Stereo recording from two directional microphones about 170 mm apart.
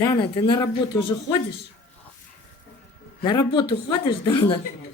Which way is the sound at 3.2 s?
30° left (ahead or behind).